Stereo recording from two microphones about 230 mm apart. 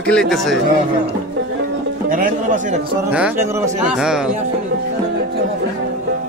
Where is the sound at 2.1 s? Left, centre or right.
Right.